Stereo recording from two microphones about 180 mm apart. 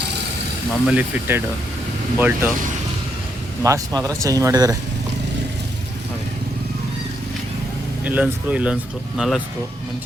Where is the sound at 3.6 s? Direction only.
20° right (ahead or behind).